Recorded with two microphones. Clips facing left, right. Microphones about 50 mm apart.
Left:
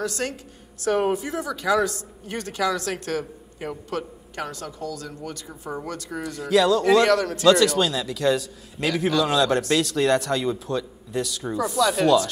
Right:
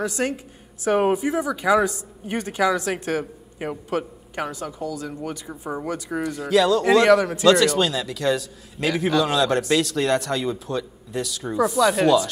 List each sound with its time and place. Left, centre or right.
0.0 s speech: centre
6.2 s a man's voice: centre
7.1 s speech: centre
7.4 s a man's voice: centre